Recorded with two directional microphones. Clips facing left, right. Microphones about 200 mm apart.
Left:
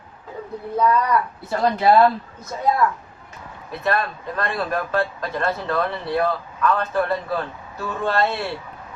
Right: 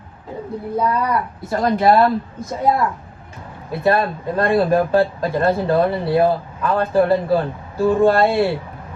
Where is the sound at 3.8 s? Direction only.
30° right (ahead or behind).